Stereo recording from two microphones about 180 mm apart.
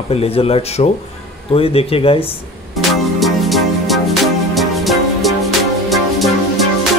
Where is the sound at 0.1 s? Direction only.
35° left (ahead or behind).